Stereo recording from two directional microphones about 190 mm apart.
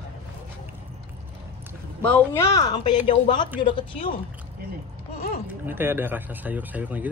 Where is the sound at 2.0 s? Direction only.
5° left (ahead or behind).